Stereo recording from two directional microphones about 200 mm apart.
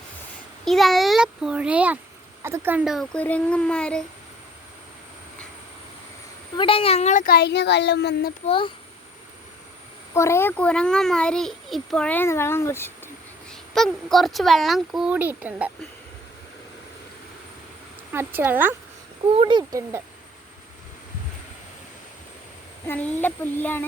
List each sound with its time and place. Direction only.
0.6 s speech: centre (ahead or behind)
6.6 s speech: 25° left (ahead or behind); by 8.3 s 60° left (ahead or behind)
8.4 s speech: 25° left (ahead or behind)
10.2 s a child's voice: 15° left (ahead or behind)
13.5 s speech: centre (ahead or behind)
18.1 s speech: 10° right (ahead or behind)
19.3 s speech: 25° right (ahead or behind)
22.9 s a child's voice: 10° left (ahead or behind)